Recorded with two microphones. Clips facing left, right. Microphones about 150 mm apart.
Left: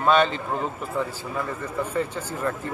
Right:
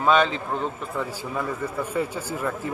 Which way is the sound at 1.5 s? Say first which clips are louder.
Even; 10° right (ahead or behind).